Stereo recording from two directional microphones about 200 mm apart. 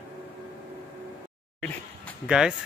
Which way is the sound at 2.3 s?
5° right (ahead or behind).